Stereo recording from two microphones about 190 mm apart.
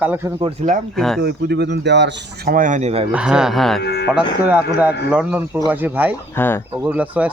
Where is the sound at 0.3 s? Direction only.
35° right (ahead or behind).